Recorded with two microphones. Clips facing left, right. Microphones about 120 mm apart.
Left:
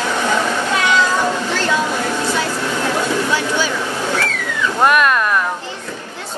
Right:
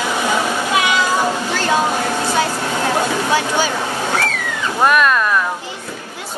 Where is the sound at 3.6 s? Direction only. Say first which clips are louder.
Right 1 dB; 45° right (ahead or behind).